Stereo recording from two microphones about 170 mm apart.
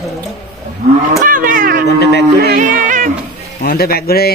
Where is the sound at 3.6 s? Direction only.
65° left (ahead or behind).